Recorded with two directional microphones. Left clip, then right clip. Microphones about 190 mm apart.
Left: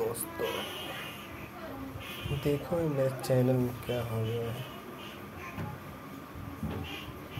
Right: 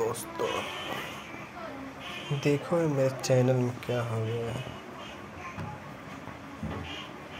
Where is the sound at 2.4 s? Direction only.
5° right (ahead or behind).